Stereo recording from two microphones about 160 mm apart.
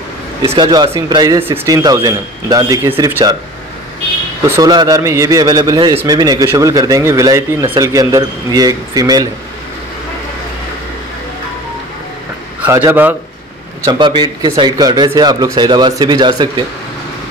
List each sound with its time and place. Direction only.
0.6 s speech: 25° right (ahead or behind)
4.5 s speech: 20° right (ahead or behind)
12.6 s a man's voice: 15° right (ahead or behind)
13.8 s speech: 30° right (ahead or behind)